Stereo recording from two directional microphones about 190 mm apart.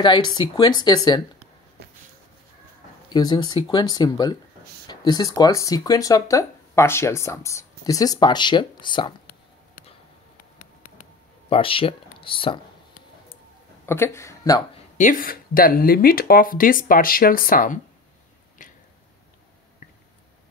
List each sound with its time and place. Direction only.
0.0 s speech: 25° left (ahead or behind)
3.1 s speech: 20° left (ahead or behind)
10.6 s a sound: 40° left (ahead or behind)
11.4 s speech: 30° left (ahead or behind)
13.8 s speech: 15° left (ahead or behind)
15.0 s speech: 45° left (ahead or behind)
18.6 s a sound: 40° left (ahead or behind)